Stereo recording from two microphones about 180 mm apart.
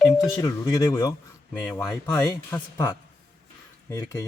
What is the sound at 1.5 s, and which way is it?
Speech, 5° left (ahead or behind).